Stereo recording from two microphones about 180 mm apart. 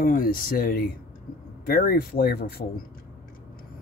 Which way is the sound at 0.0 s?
50° left (ahead or behind).